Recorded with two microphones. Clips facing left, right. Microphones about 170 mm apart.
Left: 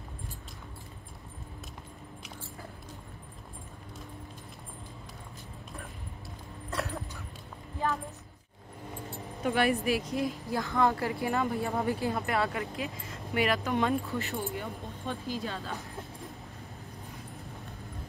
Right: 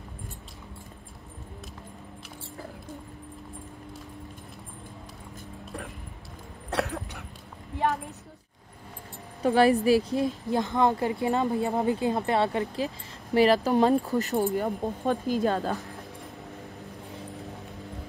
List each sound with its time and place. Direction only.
6.7 s dog: 70° right (ahead or behind)
7.7 s a sound: 75° right (ahead or behind)
9.4 s a woman's voice: 30° right (ahead or behind); by 15.8 s 50° right (ahead or behind)